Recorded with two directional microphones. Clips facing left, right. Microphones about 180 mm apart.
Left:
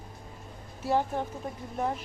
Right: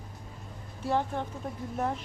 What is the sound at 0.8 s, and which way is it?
A woman's voice, 5° left (ahead or behind).